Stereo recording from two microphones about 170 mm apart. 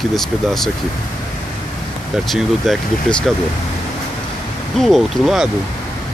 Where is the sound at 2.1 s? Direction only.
Centre (ahead or behind).